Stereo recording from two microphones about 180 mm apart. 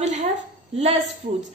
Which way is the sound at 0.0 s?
40° right (ahead or behind).